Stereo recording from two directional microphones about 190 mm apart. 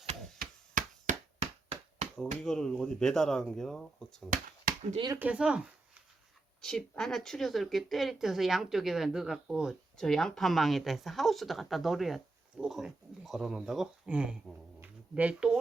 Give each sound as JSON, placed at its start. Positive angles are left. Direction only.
{"t": 0.3, "sound": "a sound", "side_deg": -45}
{"t": 2.1, "sound": "speech", "side_deg": 5}
{"t": 4.3, "sound": "finger snapping", "side_deg": -45}
{"t": 5.1, "sound": "speech", "side_deg": -10}